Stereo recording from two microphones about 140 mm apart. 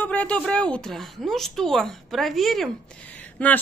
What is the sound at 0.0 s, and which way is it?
A woman's voice, 10° left (ahead or behind).